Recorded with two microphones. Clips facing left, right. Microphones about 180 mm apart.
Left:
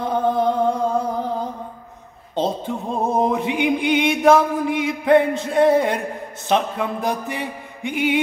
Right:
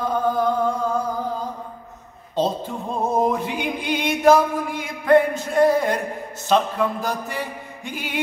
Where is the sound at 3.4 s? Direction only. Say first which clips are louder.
Left 6 dB; 65° left (ahead or behind).